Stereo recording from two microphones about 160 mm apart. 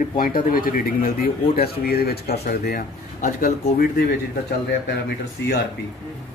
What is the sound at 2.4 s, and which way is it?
Speech, 65° left (ahead or behind).